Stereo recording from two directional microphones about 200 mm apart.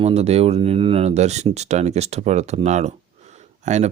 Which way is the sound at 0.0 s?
30° right (ahead or behind).